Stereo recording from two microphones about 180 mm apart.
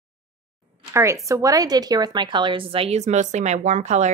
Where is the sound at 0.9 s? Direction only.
15° right (ahead or behind).